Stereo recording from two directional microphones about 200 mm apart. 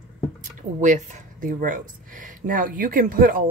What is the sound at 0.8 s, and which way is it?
Speech, 40° right (ahead or behind).